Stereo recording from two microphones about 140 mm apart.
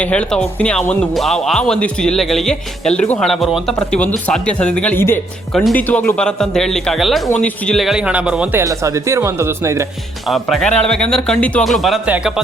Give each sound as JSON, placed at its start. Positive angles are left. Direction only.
{"t": 0.0, "sound": "speech", "side_deg": 10}
{"t": 8.6, "sound": "speech", "side_deg": -20}
{"t": 10.2, "sound": "speech", "side_deg": 0}
{"t": 12.0, "sound": "speech", "side_deg": -10}